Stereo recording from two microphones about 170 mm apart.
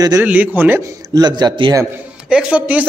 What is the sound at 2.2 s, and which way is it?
Speech, 5° right (ahead or behind).